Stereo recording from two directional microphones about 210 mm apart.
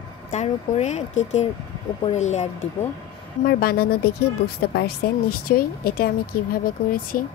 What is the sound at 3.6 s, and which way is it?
Speech, 45° left (ahead or behind).